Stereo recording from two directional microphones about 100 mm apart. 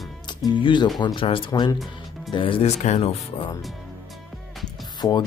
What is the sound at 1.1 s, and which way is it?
Speech, 65° left (ahead or behind).